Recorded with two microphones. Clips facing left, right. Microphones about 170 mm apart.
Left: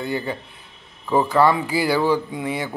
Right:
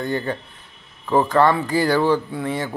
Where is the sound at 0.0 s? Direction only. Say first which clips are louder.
Right 2 dB; 10° left (ahead or behind).